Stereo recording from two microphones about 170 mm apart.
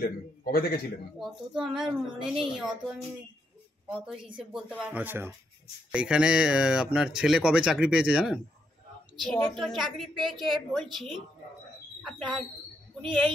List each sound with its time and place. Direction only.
0.0 s a man's voice: 60° left (ahead or behind)
1.2 s speech: centre (ahead or behind)